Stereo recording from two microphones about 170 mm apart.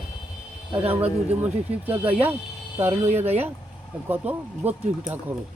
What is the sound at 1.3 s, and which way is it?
Speech, 10° right (ahead or behind).